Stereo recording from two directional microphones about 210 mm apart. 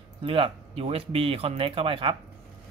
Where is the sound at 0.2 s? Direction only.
25° right (ahead or behind).